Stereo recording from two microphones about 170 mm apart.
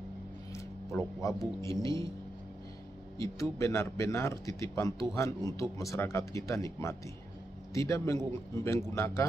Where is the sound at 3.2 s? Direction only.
20° left (ahead or behind).